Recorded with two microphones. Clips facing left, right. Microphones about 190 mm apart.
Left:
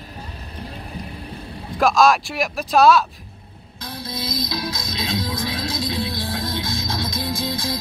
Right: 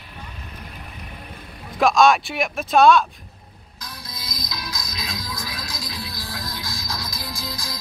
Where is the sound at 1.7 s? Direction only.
Centre (ahead or behind).